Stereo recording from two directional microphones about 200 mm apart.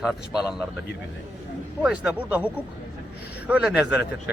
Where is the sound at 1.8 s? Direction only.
5° right (ahead or behind).